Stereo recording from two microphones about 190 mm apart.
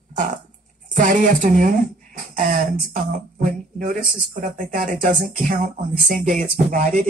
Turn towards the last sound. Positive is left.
turn(degrees=-45)  # may be behind; listen again after turning